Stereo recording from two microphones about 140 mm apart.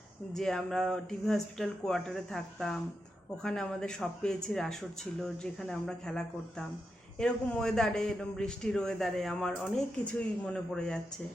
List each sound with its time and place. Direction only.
0.3 s a man's voice: 5° left (ahead or behind)